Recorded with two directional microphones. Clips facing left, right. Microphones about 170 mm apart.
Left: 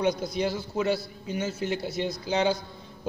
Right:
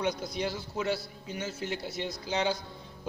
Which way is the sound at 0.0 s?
15° left (ahead or behind).